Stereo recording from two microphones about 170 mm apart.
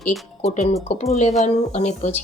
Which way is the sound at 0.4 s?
40° left (ahead or behind).